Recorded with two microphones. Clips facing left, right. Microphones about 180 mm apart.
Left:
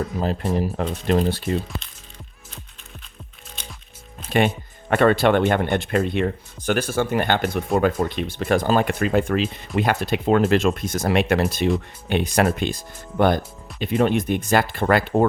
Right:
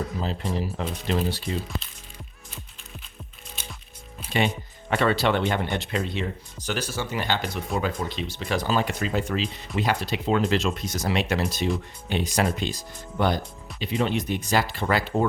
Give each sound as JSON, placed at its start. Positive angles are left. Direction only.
{"t": 0.2, "sound": "speech", "side_deg": 50}
{"t": 3.5, "sound": "music", "side_deg": -5}
{"t": 4.3, "sound": "speech", "side_deg": 55}